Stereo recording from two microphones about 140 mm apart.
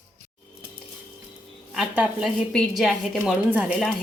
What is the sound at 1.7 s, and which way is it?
A woman's voice, centre (ahead or behind).